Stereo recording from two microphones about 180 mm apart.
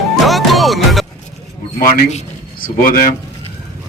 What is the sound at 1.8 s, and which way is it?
A man's voice, 45° left (ahead or behind).